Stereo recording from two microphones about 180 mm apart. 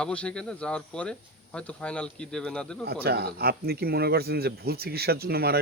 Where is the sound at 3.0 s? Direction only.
60° right (ahead or behind).